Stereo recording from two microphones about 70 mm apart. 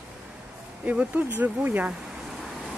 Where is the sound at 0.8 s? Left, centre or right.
Right.